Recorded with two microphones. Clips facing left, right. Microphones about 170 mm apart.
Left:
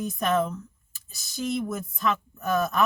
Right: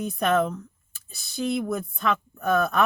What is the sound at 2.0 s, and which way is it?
Speech, 60° right (ahead or behind).